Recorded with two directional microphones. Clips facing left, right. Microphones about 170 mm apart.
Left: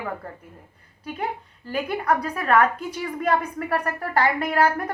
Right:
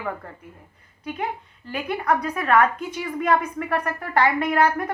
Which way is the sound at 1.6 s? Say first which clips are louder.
Even; 30° left (ahead or behind).